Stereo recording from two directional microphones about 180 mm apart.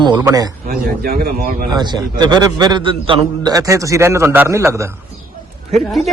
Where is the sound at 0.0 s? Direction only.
20° right (ahead or behind).